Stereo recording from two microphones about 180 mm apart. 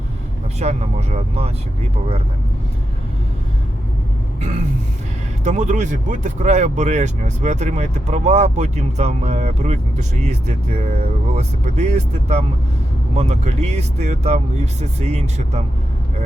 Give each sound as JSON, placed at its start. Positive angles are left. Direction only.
{"t": 0.6, "sound": "speech", "side_deg": -35}
{"t": 5.4, "sound": "speech", "side_deg": -40}